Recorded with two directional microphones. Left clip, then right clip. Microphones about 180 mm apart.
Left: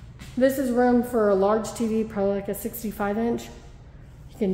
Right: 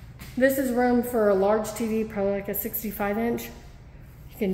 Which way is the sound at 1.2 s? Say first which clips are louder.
Right 1 dB; 15° left (ahead or behind).